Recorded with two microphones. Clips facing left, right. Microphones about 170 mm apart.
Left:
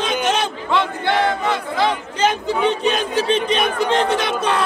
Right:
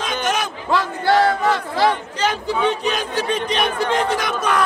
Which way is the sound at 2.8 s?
25° left (ahead or behind).